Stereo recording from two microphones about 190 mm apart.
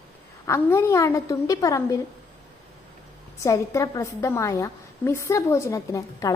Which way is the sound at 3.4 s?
15° left (ahead or behind).